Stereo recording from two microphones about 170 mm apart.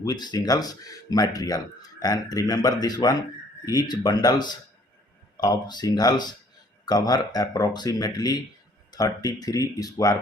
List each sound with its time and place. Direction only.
0.0 s speech: 25° left (ahead or behind)